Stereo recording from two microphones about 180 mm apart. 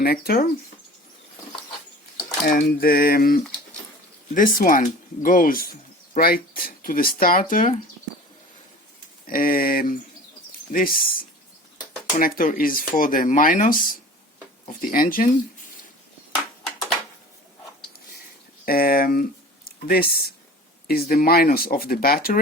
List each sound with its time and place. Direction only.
0.0 s speech: 55° left (ahead or behind)
2.4 s speech: 60° left (ahead or behind)
9.2 s speech: 50° left (ahead or behind)
18.6 s speech: 55° left (ahead or behind)